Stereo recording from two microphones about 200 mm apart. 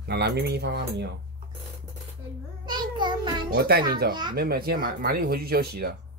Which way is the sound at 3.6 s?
50° right (ahead or behind).